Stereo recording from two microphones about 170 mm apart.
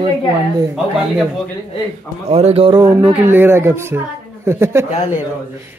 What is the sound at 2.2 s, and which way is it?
Speech, 35° right (ahead or behind).